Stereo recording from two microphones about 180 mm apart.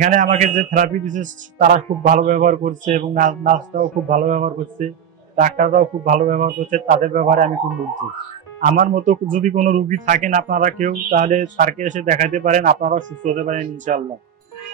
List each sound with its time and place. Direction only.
0.0 s a man's voice: 45° right (ahead or behind)
8.5 s a man's voice: 45° right (ahead or behind)